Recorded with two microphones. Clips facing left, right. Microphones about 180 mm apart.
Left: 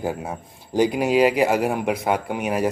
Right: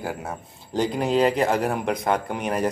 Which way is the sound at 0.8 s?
10° left (ahead or behind).